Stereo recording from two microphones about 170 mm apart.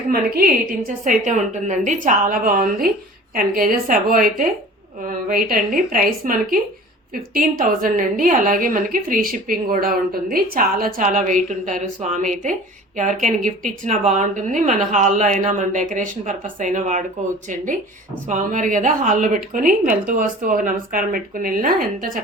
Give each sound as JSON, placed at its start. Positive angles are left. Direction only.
{"t": 0.1, "sound": "a woman's voice", "side_deg": -60}
{"t": 1.0, "sound": "a woman's voice", "side_deg": -50}
{"t": 18.3, "sound": "a woman's voice", "side_deg": -45}